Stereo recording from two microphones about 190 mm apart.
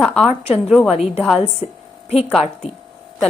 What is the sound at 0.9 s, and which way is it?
Speech, 30° left (ahead or behind).